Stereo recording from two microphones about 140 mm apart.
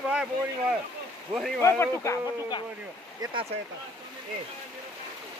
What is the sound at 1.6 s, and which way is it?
Speech, 20° left (ahead or behind).